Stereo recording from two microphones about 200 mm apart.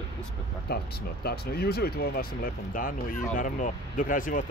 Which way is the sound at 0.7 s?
50° left (ahead or behind).